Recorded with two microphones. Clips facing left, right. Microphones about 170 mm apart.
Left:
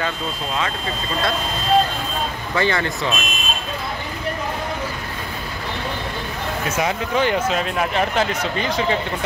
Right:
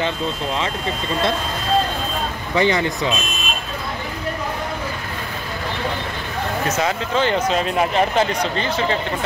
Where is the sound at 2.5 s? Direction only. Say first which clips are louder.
Right 3 dB; 20° right (ahead or behind).